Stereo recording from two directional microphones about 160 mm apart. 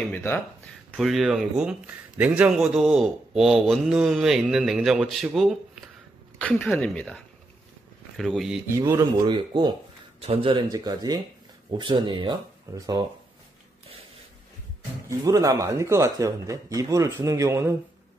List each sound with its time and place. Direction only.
0.1 s a woman's voice: 15° left (ahead or behind)
0.9 s a man's voice: centre (ahead or behind)
8.6 s speech: 20° right (ahead or behind)
15.0 s speech: 20° right (ahead or behind)